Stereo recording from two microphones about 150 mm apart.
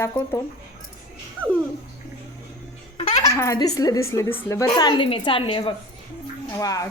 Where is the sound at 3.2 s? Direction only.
20° left (ahead or behind); by 5.7 s 35° left (ahead or behind).